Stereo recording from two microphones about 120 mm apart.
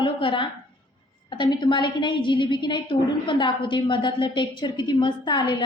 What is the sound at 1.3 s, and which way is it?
A woman's voice, 40° left (ahead or behind).